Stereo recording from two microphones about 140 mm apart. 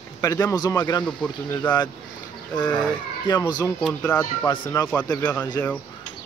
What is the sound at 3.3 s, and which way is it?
Speech, 30° left (ahead or behind).